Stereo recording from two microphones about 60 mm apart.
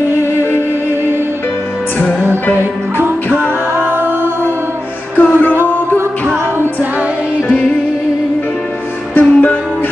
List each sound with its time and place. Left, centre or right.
3.3 s music: right
5.1 s music: left
6.2 s music: right
9.2 s music: left